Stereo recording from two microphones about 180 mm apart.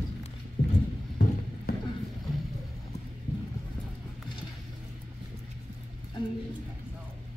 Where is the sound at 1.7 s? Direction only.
55° left (ahead or behind).